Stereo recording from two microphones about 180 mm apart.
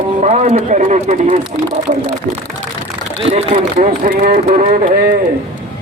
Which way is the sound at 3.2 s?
30° right (ahead or behind).